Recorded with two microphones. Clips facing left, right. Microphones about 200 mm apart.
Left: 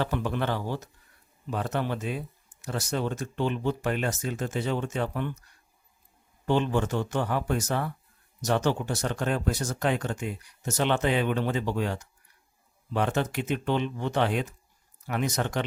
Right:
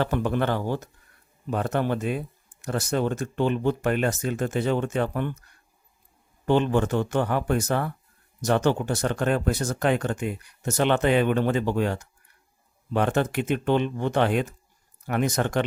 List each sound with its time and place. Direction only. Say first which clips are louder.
0.0 s a man's voice: right 4 dB; 50° right (ahead or behind)
6.4 s a man's voice: right 4 dB; 55° right (ahead or behind)